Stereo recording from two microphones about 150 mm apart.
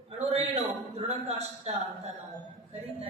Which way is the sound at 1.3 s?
45° right (ahead or behind).